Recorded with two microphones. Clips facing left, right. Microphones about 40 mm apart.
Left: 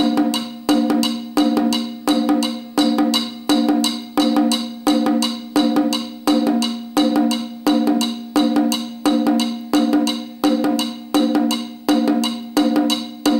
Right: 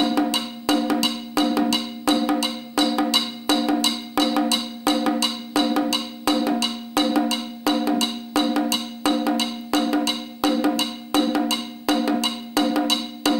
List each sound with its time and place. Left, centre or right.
0.3 s music: right